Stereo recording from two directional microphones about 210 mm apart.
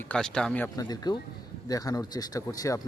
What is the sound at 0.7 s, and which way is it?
Speech, 20° left (ahead or behind).